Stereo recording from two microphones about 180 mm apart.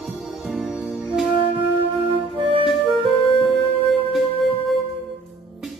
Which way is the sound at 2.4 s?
30° right (ahead or behind).